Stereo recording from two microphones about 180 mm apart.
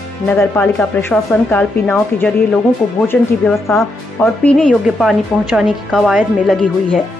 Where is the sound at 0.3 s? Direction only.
10° left (ahead or behind).